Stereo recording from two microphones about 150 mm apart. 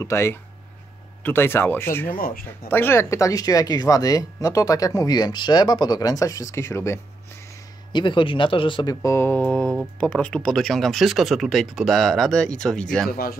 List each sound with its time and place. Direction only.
0.0 s speech: 15° left (ahead or behind)
2.0 s speech: 70° left (ahead or behind)
2.7 s speech: 15° left (ahead or behind)
7.9 s speech: 30° left (ahead or behind)
9.0 s speech: 15° left (ahead or behind)
13.1 s speech: 80° left